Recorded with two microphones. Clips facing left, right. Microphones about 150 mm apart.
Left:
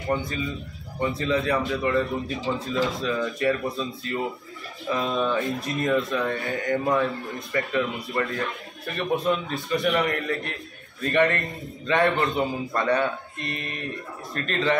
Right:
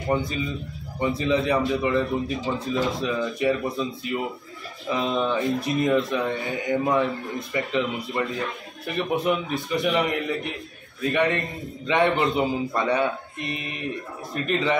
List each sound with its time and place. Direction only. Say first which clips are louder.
1.1 s a man's voice: right 2 dB; 15° right (ahead or behind)